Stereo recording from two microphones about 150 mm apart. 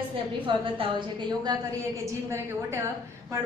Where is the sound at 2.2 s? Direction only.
20° right (ahead or behind).